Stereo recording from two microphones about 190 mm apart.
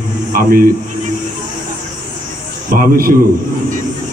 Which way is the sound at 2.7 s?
50° right (ahead or behind).